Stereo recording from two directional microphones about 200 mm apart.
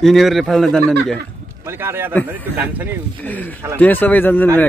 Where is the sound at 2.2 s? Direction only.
10° right (ahead or behind).